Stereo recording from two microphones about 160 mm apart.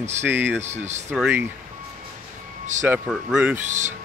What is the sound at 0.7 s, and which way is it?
Speech, 45° right (ahead or behind).